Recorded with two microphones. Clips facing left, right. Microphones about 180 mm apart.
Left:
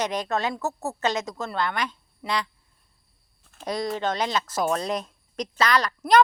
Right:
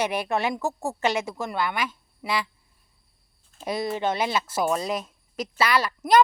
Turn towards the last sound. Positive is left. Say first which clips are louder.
# even
turn(degrees=-5)  # may be behind; listen again after turning